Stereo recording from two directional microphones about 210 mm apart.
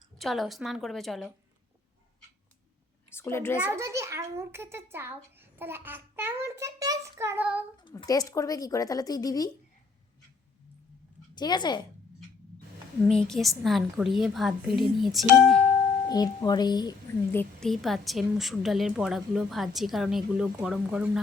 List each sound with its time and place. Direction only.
0.2 s a woman's voice: centre (ahead or behind)
3.2 s speech: 10° left (ahead or behind)
3.6 s a child's voice: 10° right (ahead or behind)
7.8 s speech: 20° left (ahead or behind)
11.3 s speech: 20° left (ahead or behind)
13.1 s a woman's voice: 5° left (ahead or behind)
16.0 s speech: 20° left (ahead or behind)
17.3 s a woman's voice: centre (ahead or behind)